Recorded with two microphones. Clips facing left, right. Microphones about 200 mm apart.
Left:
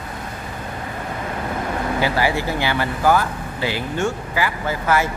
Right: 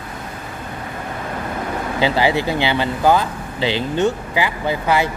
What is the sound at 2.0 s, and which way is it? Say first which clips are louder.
Speech: right 4 dB; 20° right (ahead or behind).